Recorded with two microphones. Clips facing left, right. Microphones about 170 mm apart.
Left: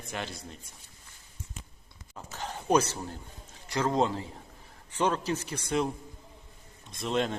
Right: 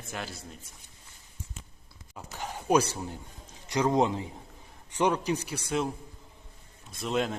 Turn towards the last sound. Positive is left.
turn(degrees=0)  # may be behind; listen again after turning